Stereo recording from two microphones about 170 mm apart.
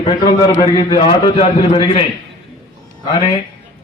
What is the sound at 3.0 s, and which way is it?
Speech, 30° left (ahead or behind).